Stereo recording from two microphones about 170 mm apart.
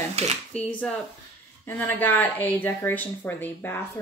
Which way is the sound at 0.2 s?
40° right (ahead or behind).